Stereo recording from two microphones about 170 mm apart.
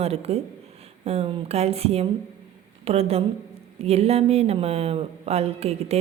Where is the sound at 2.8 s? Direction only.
35° right (ahead or behind).